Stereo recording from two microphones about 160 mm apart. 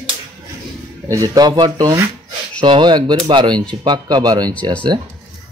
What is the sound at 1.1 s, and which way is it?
Speech, 25° right (ahead or behind).